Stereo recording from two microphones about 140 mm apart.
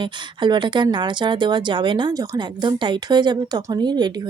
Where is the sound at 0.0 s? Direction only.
35° right (ahead or behind).